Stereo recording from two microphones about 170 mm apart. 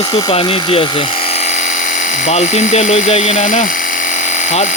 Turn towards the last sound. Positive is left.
turn(degrees=45)  # may be behind; listen again after turning